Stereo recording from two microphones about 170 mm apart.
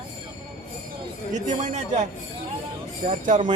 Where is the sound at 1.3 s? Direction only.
45° right (ahead or behind).